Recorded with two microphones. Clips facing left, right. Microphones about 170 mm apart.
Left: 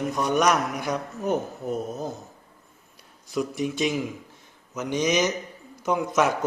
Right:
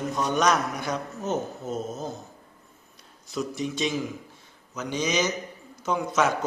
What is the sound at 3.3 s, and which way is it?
A man's voice, 15° left (ahead or behind).